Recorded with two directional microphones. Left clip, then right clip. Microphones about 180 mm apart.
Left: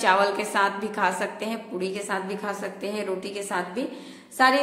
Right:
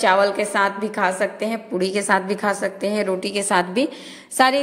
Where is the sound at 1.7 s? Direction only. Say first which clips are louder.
Right 10 dB; 45° right (ahead or behind).